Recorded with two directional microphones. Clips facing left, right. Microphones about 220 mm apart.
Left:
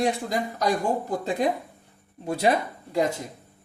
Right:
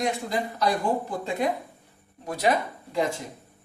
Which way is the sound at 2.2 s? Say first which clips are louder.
Left 3 dB; 30° left (ahead or behind).